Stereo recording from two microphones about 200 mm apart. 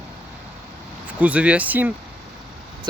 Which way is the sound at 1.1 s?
5° right (ahead or behind).